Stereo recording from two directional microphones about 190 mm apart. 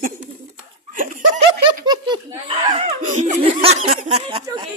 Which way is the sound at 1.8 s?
25° right (ahead or behind).